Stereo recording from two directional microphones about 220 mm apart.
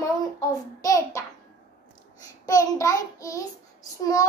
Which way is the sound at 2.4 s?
15° left (ahead or behind).